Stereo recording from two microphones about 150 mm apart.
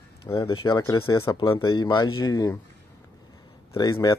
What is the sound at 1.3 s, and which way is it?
Speech, 30° left (ahead or behind).